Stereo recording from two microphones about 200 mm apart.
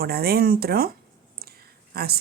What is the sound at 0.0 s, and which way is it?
Speech, 50° right (ahead or behind).